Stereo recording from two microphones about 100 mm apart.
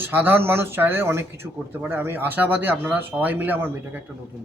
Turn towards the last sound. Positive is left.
turn(degrees=-20)  # may be behind; listen again after turning